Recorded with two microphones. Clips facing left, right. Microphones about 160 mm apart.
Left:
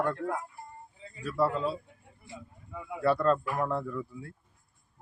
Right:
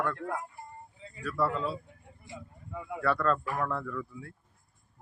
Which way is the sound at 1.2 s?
30° left (ahead or behind).